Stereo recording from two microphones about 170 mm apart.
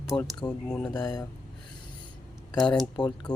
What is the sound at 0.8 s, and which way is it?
Speech, 25° left (ahead or behind).